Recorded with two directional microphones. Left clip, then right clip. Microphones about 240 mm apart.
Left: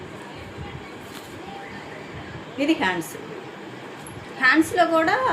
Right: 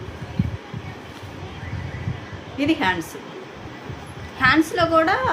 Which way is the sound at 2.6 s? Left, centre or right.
Centre.